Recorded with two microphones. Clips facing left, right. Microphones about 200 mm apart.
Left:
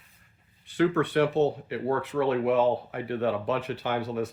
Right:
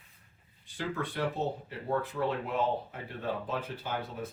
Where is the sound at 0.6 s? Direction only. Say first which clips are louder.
Left 12 dB; 70° left (ahead or behind).